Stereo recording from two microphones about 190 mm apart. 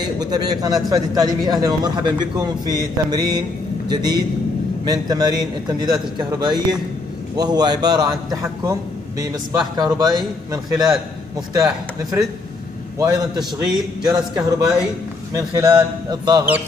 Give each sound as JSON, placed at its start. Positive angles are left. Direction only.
{"t": 0.2, "sound": "a man's voice", "side_deg": -20}
{"t": 14.1, "sound": "a man's voice", "side_deg": -5}
{"t": 15.3, "sound": "a man's voice", "side_deg": -20}